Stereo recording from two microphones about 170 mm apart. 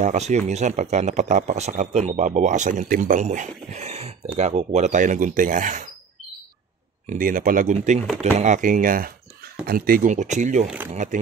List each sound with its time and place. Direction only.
0.0 s speech: 45° right (ahead or behind)
7.1 s speech: 55° right (ahead or behind)